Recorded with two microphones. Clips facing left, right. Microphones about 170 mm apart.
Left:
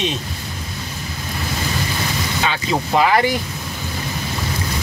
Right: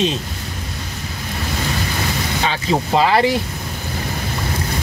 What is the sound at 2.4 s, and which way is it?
Speech, 30° right (ahead or behind).